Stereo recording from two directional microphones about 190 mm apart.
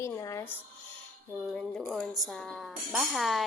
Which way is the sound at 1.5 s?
5° left (ahead or behind).